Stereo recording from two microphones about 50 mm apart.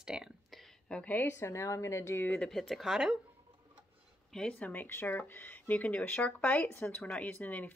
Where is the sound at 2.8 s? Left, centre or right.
Centre.